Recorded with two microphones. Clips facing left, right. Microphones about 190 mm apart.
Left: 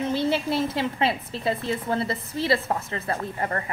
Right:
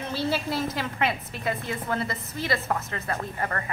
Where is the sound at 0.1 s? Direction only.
20° left (ahead or behind).